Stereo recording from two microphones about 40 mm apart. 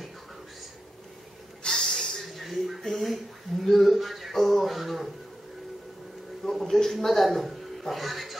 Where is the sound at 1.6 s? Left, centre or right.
Centre.